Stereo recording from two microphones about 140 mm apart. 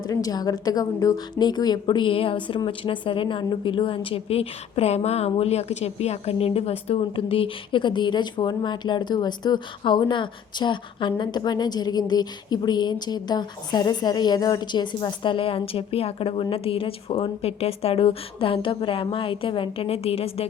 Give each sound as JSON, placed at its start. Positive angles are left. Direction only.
{"t": 0.1, "sound": "a woman's voice", "side_deg": 25}